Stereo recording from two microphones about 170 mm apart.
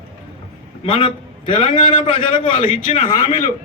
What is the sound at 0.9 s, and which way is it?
Speech, 30° left (ahead or behind).